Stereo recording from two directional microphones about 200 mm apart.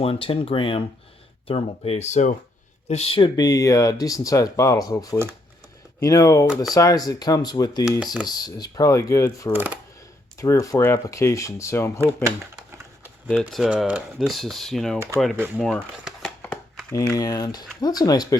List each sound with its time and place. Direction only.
0.0 s speech: 30° left (ahead or behind)
7.9 s speech: centre (ahead or behind)
8.3 s speech: 20° left (ahead or behind)
9.5 s speech: 10° right (ahead or behind)
10.3 s speech: 15° left (ahead or behind)
13.4 s speech: 5° right (ahead or behind)
14.9 s speech: 15° right (ahead or behind)
15.5 s speech: centre (ahead or behind); by 18.3 s 20° left (ahead or behind)